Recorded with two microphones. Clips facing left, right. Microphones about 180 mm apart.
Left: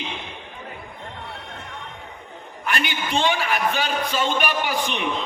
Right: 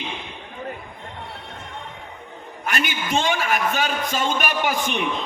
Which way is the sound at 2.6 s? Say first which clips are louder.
Even; 45° right (ahead or behind).